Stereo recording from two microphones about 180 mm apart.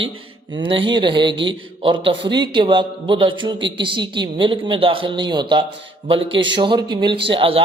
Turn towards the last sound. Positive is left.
turn(degrees=-30)  # may be behind; listen again after turning